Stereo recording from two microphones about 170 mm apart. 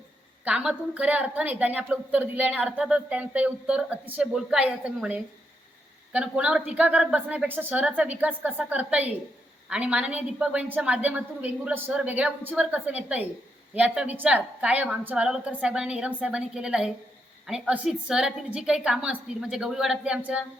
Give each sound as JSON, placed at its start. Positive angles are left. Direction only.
{"t": 0.4, "sound": "a woman's voice", "side_deg": -5}